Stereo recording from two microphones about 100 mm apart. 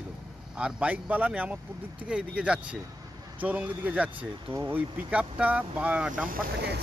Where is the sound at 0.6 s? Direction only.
10° right (ahead or behind).